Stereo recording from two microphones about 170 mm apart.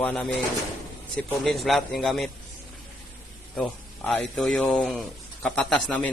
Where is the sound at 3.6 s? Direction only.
5° left (ahead or behind).